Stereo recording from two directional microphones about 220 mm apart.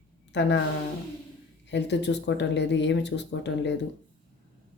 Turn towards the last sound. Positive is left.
turn(degrees=55)  # may be behind; listen again after turning